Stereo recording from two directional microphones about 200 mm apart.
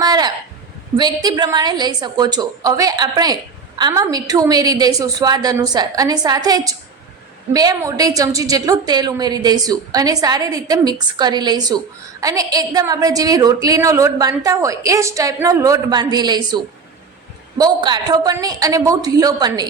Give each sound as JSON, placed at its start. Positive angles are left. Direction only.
{"t": 0.0, "sound": "a sound", "side_deg": -20}
{"t": 0.9, "sound": "a woman's voice", "side_deg": -20}
{"t": 17.6, "sound": "a woman's voice", "side_deg": -20}